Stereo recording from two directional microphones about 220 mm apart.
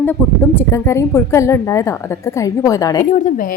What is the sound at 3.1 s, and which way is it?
Speech, 40° left (ahead or behind).